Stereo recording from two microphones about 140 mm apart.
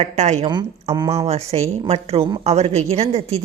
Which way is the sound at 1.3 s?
50° right (ahead or behind).